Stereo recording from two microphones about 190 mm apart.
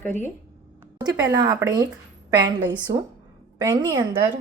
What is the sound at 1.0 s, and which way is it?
Speech, 20° right (ahead or behind).